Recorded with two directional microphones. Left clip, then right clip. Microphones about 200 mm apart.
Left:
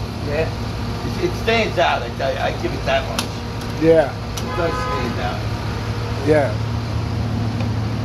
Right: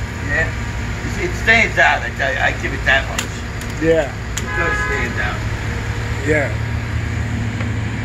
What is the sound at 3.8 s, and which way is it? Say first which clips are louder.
Speech: left 2 dB; 5° left (ahead or behind).